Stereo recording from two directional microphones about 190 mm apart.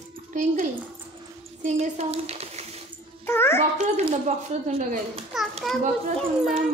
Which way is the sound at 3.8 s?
35° right (ahead or behind).